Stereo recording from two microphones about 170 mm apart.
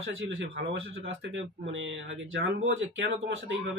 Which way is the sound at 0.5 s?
90° right.